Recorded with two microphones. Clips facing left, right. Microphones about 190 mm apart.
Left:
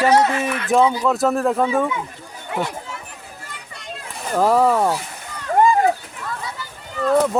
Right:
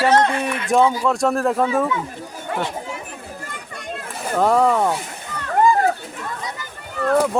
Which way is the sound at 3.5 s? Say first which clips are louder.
Right 2 dB; 50° right (ahead or behind).